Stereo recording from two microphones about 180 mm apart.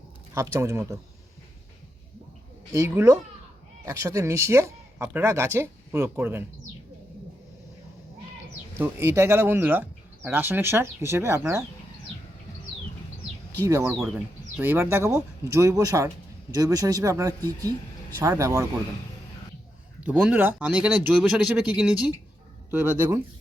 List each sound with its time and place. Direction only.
0.3 s speech: 15° right (ahead or behind)
2.7 s speech: 15° right (ahead or behind)
8.7 s speech: 15° right (ahead or behind)
13.7 s speech: 20° right (ahead or behind)
20.0 s speech: 10° right (ahead or behind)